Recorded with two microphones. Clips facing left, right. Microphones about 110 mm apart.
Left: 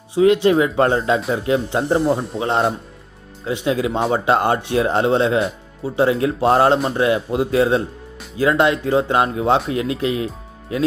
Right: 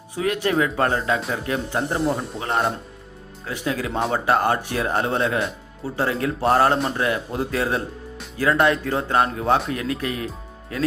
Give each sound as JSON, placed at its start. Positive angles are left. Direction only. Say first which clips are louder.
{"t": 0.1, "sound": "speech", "louder": "left 9 dB", "side_deg": 20}
{"t": 2.0, "sound": "a man's voice", "louder": "left 5 dB", "side_deg": 0}
{"t": 2.4, "sound": "speech", "louder": "left 4 dB", "side_deg": 25}
{"t": 5.4, "sound": "speech", "louder": "left 5 dB", "side_deg": 0}
{"t": 6.0, "sound": "speech", "louder": "left 6 dB", "side_deg": 20}